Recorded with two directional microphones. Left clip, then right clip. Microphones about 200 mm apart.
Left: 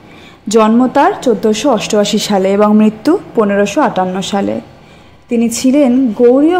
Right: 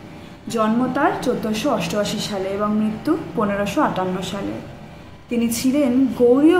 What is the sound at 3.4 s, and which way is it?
A woman's voice, 30° left (ahead or behind).